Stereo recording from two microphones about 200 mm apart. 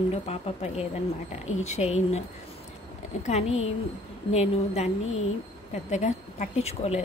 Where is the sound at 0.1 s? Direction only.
30° left (ahead or behind).